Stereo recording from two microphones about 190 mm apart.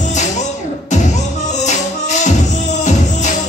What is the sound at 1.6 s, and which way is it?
Music, 40° left (ahead or behind).